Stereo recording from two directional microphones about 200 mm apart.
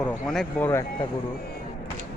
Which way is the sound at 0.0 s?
Centre (ahead or behind).